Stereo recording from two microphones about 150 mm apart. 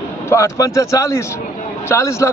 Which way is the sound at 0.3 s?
20° left (ahead or behind).